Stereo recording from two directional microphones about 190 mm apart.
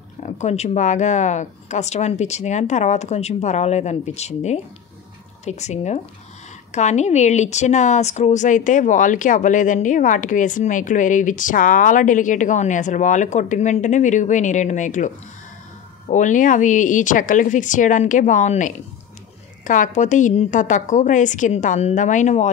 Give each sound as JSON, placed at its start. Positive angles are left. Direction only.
{"t": 0.2, "sound": "speech", "side_deg": 35}